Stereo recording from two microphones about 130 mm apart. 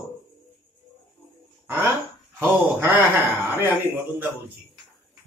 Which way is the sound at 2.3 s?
15° right (ahead or behind).